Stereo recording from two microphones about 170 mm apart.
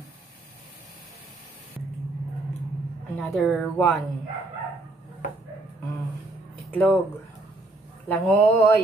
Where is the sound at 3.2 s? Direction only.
Centre (ahead or behind).